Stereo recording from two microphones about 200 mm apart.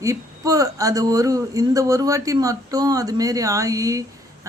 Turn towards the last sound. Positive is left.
turn(degrees=-15)  # may be behind; listen again after turning